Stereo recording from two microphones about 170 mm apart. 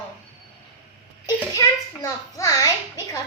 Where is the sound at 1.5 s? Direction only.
20° left (ahead or behind).